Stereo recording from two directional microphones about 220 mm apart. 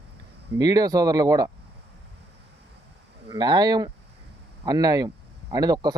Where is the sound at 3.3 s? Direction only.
20° right (ahead or behind).